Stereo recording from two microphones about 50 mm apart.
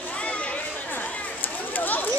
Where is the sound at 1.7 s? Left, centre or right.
Left.